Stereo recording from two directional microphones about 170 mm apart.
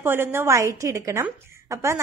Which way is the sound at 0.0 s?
15° right (ahead or behind).